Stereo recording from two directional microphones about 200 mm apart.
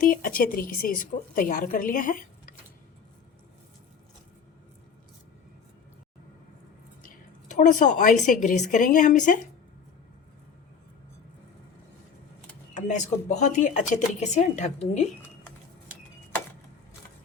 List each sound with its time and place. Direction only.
0.0 s a woman's voice: 45° left (ahead or behind)
7.0 s a woman's voice: 40° left (ahead or behind)
12.7 s speech: 35° left (ahead or behind)